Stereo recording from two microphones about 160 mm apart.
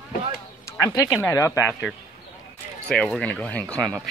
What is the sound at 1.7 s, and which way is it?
Speech, centre (ahead or behind).